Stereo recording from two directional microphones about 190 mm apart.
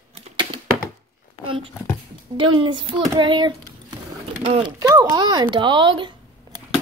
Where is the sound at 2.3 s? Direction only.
25° right (ahead or behind).